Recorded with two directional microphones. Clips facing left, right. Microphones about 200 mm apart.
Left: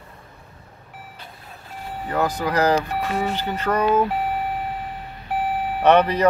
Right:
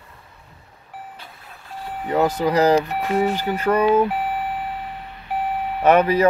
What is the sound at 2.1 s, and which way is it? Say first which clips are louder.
Speech: right 4 dB; 20° right (ahead or behind).